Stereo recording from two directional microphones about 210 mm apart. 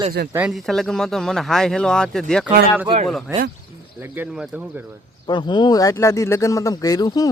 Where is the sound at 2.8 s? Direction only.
30° right (ahead or behind).